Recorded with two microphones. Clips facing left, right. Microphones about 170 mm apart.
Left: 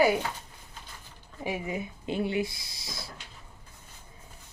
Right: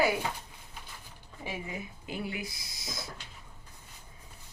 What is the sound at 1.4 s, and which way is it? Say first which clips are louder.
Speech: left 6 dB; 25° left (ahead or behind).